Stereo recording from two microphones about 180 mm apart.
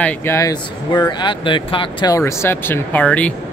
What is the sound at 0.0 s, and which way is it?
Speech, 15° left (ahead or behind).